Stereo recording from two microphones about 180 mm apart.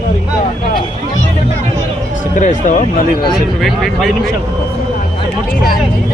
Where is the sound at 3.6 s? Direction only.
Centre (ahead or behind).